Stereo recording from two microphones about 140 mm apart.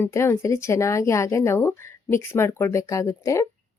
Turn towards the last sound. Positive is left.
turn(degrees=20)  # may be behind; listen again after turning